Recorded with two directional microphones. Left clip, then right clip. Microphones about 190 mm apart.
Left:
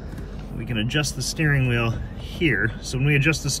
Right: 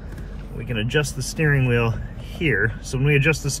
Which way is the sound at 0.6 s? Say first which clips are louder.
Right 1 dB; centre (ahead or behind).